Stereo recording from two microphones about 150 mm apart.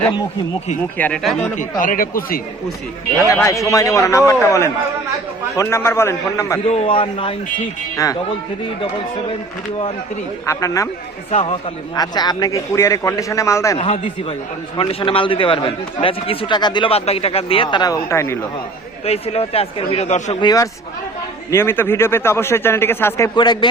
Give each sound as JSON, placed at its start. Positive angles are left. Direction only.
{"t": 0.9, "sound": "a man's voice", "side_deg": 10}
{"t": 1.2, "sound": "speech", "side_deg": 0}
{"t": 1.5, "sound": "speech", "side_deg": 60}
{"t": 3.7, "sound": "a man's voice", "side_deg": 20}
{"t": 6.7, "sound": "a man's voice", "side_deg": 40}
{"t": 10.4, "sound": "a man's voice", "side_deg": 20}
{"t": 11.3, "sound": "a man's voice", "side_deg": 40}
{"t": 11.9, "sound": "a man's voice", "side_deg": 25}
{"t": 13.7, "sound": "a man's voice", "side_deg": 40}
{"t": 19.0, "sound": "speech", "side_deg": 45}
{"t": 20.4, "sound": "a man's voice", "side_deg": 25}
{"t": 23.4, "sound": "a man's voice", "side_deg": 30}